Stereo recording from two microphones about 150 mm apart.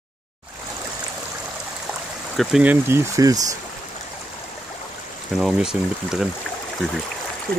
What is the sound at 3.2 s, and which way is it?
Speech, 20° right (ahead or behind).